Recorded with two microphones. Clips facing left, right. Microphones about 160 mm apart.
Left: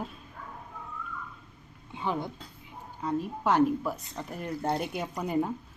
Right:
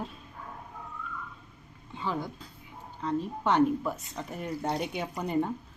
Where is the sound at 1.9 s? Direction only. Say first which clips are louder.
Left 1 dB; 15° left (ahead or behind).